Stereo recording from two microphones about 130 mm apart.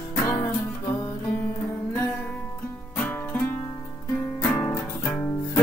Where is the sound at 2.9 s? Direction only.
10° left (ahead or behind).